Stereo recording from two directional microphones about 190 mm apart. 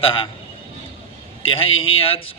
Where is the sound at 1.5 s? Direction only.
30° left (ahead or behind).